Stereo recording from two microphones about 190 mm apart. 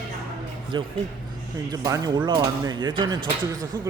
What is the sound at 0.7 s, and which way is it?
A man's voice, 25° right (ahead or behind).